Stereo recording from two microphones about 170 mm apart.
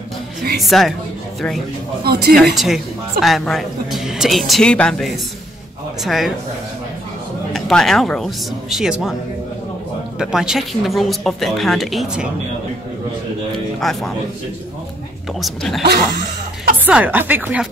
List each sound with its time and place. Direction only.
0.6 s a woman's voice: centre (ahead or behind)
2.0 s a man's voice: 65° right (ahead or behind)
2.3 s a woman's voice: centre (ahead or behind)
7.5 s a woman's voice: centre (ahead or behind)
10.1 s a woman's voice: 5° right (ahead or behind)
13.7 s a woman's voice: centre (ahead or behind)
15.4 s a woman's voice: centre (ahead or behind)
16.8 s speech: 10° right (ahead or behind)